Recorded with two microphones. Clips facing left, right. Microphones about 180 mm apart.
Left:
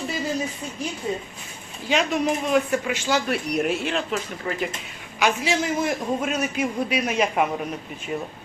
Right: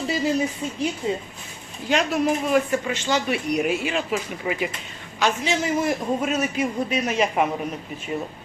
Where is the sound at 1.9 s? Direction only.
Centre (ahead or behind).